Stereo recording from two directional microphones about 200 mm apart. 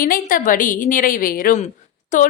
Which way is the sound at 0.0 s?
45° left (ahead or behind).